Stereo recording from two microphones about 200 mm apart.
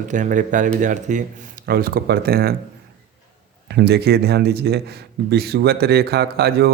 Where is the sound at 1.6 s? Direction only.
50° right (ahead or behind).